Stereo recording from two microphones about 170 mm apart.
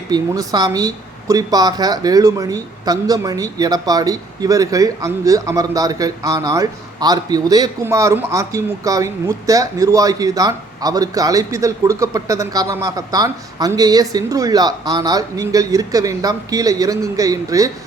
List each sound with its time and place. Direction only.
0.1 s speech: 25° right (ahead or behind)